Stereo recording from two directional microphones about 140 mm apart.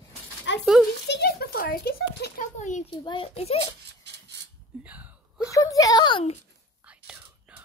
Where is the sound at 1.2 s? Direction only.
90° left; by 2.8 s 60° left (ahead or behind).